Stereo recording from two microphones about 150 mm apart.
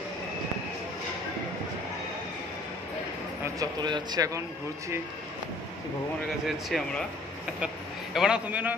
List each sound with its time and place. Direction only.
3.5 s speech: 30° right (ahead or behind)
6.4 s a man's voice: centre (ahead or behind)